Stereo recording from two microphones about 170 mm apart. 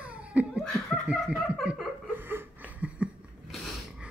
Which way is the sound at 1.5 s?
5° right (ahead or behind).